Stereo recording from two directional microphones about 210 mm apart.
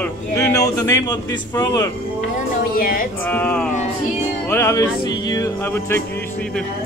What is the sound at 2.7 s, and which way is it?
Speech, 45° left (ahead or behind).